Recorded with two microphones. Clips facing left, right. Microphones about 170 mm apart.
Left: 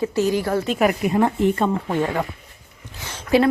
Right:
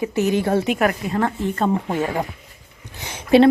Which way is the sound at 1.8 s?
10° right (ahead or behind).